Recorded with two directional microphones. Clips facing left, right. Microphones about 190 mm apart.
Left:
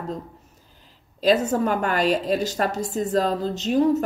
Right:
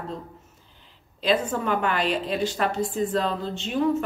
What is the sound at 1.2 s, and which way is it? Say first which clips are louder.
A woman's voice: left 4 dB; 40° left (ahead or behind).